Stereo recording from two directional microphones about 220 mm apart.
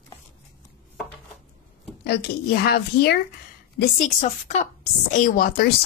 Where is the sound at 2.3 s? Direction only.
45° left (ahead or behind).